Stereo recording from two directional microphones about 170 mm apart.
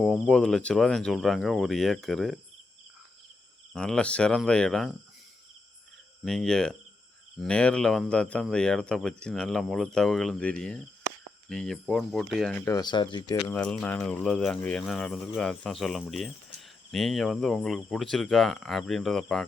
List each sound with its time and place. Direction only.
0.0 s speech: centre (ahead or behind)
3.7 s speech: 5° left (ahead or behind)
6.2 s speech: centre (ahead or behind)
12.5 s speech: 20° left (ahead or behind)
13.5 s speech: 5° left (ahead or behind)